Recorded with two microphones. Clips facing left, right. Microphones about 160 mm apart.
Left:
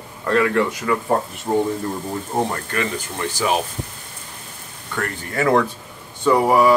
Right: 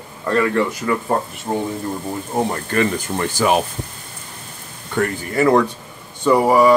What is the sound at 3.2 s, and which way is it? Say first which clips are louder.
Speech: right 4 dB; 55° right (ahead or behind).